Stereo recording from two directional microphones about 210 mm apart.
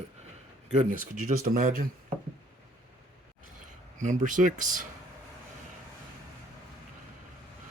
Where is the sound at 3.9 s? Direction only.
35° right (ahead or behind).